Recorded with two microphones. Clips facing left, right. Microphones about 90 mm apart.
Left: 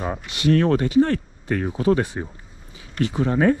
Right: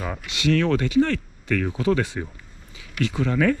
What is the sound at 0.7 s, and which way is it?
Speech, 25° left (ahead or behind).